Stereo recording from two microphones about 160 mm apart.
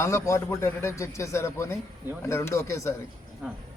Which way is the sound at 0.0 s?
15° left (ahead or behind).